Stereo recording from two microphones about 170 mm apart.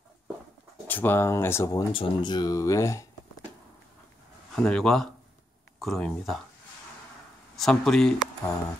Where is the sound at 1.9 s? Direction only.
30° left (ahead or behind).